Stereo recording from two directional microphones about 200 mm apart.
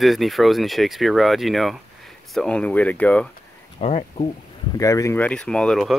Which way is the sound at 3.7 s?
30° left (ahead or behind).